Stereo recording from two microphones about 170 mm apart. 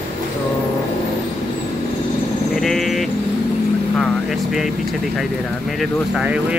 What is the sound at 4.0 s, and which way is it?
Vehicle, centre (ahead or behind).